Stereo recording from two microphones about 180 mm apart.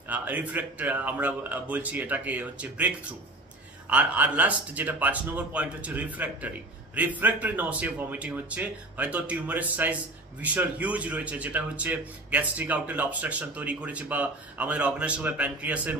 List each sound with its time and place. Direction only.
0.1 s speech: 10° right (ahead or behind)
3.9 s speech: 10° right (ahead or behind)